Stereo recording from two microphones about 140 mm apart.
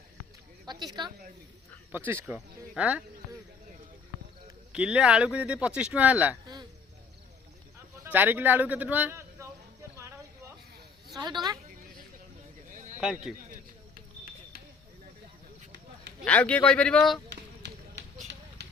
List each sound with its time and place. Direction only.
0.7 s a woman's voice: 30° right (ahead or behind)
1.9 s speech: 15° right (ahead or behind)
4.7 s speech: 5° right (ahead or behind)
8.0 s a man's voice: 15° right (ahead or behind)
9.9 s a sound: 20° right (ahead or behind)
11.1 s speech: 30° right (ahead or behind)
12.6 s a sound: 75° right (ahead or behind)
13.5 s a sound: 90° right
16.2 s a man's voice: 10° left (ahead or behind)